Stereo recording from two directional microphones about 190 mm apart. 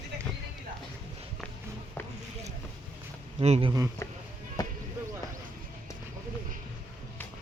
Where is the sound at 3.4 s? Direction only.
30° right (ahead or behind).